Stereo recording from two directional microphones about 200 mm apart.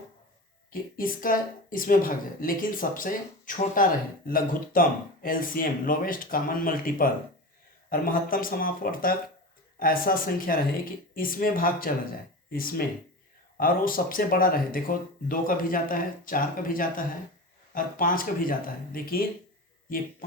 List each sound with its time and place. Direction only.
0.7 s speech: 45° left (ahead or behind)